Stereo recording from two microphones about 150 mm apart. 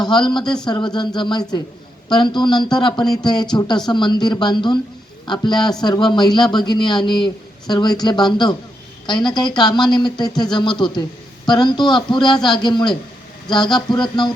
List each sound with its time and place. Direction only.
0.0 s speech: 30° left (ahead or behind)